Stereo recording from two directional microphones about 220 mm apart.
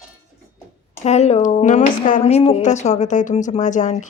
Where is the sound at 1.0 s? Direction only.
30° left (ahead or behind).